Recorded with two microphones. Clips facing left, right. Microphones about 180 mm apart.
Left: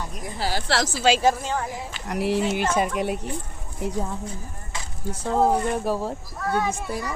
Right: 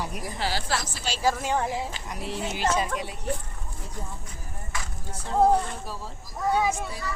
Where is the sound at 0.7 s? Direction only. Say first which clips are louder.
Left 10 dB; 85° left.